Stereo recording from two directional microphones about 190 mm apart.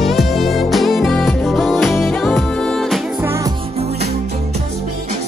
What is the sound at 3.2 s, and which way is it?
Music, 15° right (ahead or behind).